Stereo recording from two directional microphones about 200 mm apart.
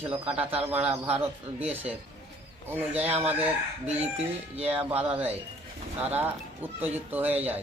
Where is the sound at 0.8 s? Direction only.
30° right (ahead or behind).